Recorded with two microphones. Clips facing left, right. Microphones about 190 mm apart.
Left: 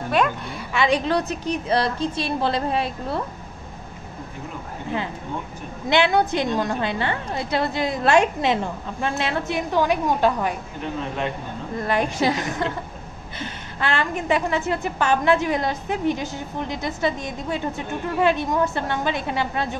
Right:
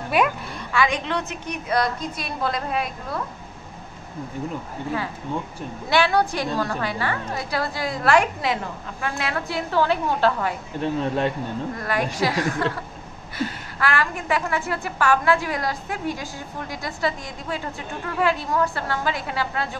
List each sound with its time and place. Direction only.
0.2 s a woman's voice: 10° right (ahead or behind)
0.7 s a woman's voice: 35° left (ahead or behind)
5.9 s a woman's voice: 20° left (ahead or behind)
11.8 s a woman's voice: 25° left (ahead or behind)